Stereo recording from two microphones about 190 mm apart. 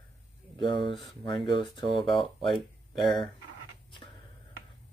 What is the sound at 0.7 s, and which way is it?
Speech, 25° left (ahead or behind).